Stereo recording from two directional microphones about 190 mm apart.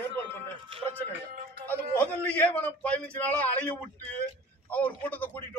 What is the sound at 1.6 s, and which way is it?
A man's voice, 10° left (ahead or behind).